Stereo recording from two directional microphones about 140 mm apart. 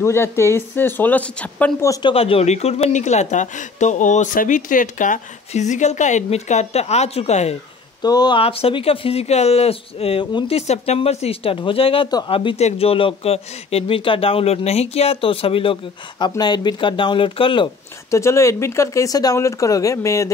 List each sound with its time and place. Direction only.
0.0 s speech: 20° left (ahead or behind)
1.9 s speech: 30° left (ahead or behind)
2.1 s speech: 45° left (ahead or behind)
8.0 s speech: 30° left (ahead or behind)
8.4 s speech: 45° left (ahead or behind)
18.1 s speech: 20° left (ahead or behind)